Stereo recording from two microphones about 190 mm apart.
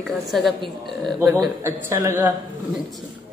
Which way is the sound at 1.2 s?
15° right (ahead or behind).